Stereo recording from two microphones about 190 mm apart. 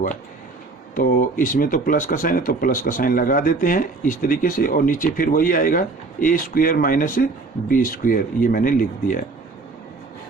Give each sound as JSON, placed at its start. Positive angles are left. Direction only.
{"t": 0.9, "sound": "speech", "side_deg": 50}